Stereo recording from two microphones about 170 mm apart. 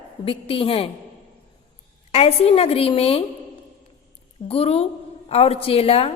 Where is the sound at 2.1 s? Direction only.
35° left (ahead or behind).